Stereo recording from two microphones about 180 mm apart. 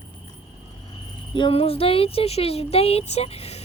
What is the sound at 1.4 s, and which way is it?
Speech, 30° left (ahead or behind).